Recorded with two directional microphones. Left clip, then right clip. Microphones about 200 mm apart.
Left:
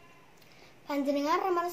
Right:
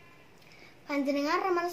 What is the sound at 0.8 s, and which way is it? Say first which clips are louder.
Speech: even; 10° left (ahead or behind).